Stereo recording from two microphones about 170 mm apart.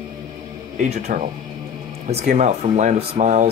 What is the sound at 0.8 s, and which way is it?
Speech, 40° right (ahead or behind).